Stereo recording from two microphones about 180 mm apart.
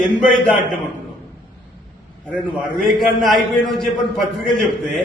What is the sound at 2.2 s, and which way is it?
A man's voice, 10° left (ahead or behind).